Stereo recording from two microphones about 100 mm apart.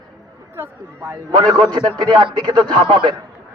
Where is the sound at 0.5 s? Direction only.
25° right (ahead or behind).